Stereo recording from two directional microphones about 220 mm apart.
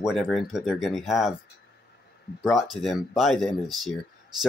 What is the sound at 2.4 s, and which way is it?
Speech, centre (ahead or behind).